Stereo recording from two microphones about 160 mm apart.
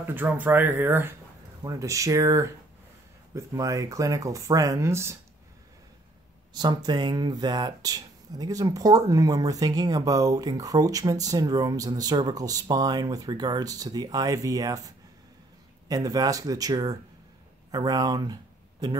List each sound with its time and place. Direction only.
0.0 s speech: 15° right (ahead or behind)
6.5 s speech: 25° right (ahead or behind)
15.9 s speech: 25° right (ahead or behind)